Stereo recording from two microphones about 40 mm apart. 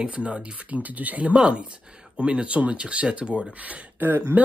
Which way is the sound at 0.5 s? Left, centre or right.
Right.